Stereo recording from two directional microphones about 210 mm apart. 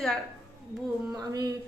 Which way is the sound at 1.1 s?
15° right (ahead or behind).